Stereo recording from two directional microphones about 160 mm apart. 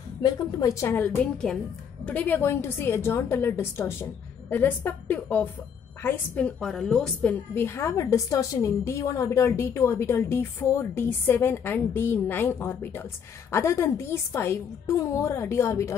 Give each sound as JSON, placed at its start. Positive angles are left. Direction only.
{"t": 0.2, "sound": "a woman's voice", "side_deg": 20}
{"t": 7.5, "sound": "a woman's voice", "side_deg": 15}